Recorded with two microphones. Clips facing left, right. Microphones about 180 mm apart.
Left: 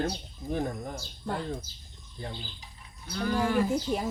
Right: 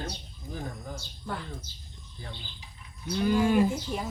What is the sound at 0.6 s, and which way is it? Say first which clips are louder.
Speech: left 5 dB; 60° left (ahead or behind).